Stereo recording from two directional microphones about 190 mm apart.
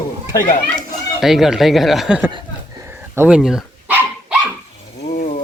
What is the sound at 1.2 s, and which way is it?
Speech, centre (ahead or behind).